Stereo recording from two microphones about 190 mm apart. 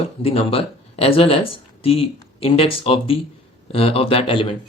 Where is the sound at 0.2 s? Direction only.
30° left (ahead or behind).